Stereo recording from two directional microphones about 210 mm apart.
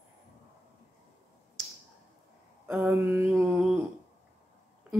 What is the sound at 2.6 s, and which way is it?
Speech, 10° right (ahead or behind).